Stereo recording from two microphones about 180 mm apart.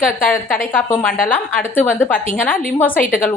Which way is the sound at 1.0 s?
50° left (ahead or behind).